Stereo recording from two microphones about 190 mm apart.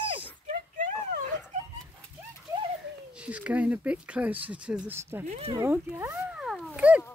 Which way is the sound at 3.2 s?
5° right (ahead or behind).